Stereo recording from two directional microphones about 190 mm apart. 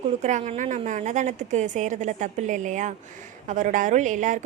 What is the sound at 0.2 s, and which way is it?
A woman's voice, 40° right (ahead or behind).